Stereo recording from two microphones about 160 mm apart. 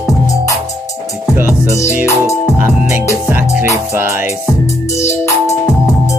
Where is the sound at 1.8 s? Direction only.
20° left (ahead or behind).